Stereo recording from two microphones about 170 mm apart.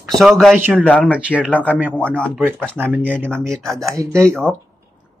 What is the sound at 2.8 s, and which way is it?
Speech, 5° right (ahead or behind).